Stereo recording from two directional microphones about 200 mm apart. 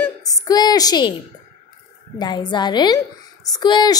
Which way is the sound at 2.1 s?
20° left (ahead or behind).